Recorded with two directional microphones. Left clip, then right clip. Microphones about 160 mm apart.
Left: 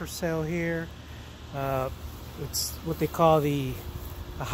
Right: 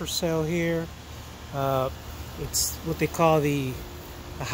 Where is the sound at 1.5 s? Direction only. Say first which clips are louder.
Right 4 dB; 10° right (ahead or behind).